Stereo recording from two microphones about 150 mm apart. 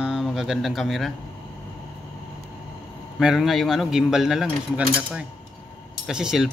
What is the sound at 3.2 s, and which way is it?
Speech, centre (ahead or behind).